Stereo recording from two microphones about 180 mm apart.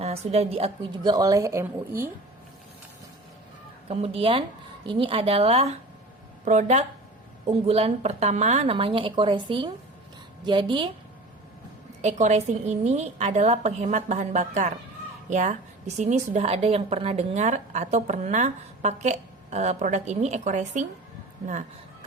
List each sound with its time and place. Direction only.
0.0 s a woman's voice: 35° right (ahead or behind); by 2.0 s 15° right (ahead or behind)
3.8 s a woman's voice: 30° right (ahead or behind)
12.0 s a woman's voice: 40° right (ahead or behind)